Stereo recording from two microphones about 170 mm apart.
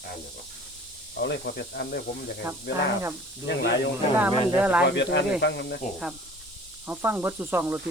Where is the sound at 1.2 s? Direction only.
80° left.